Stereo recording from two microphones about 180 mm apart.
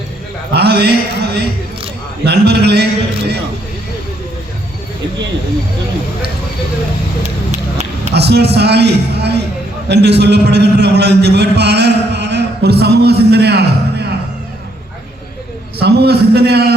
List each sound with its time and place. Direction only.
0.5 s a man's voice: 65° right (ahead or behind)
7.2 s a sound: 40° right (ahead or behind)
8.1 s a man's voice: 65° right (ahead or behind)
15.8 s a man's voice: 65° right (ahead or behind)